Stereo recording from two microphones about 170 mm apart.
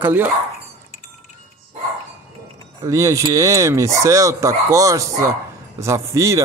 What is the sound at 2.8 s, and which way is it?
A man's voice, 20° right (ahead or behind).